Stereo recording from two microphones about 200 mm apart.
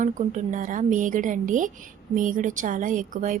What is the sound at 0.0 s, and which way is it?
A woman's voice, 40° right (ahead or behind).